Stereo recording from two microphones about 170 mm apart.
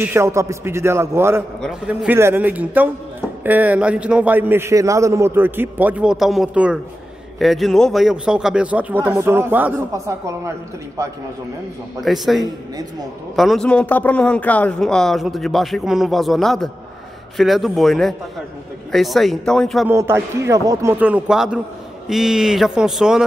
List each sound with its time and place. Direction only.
0.0 s a man's voice: 15° right (ahead or behind)
12.0 s speech: centre (ahead or behind)
19.9 s a man's voice: 15° right (ahead or behind)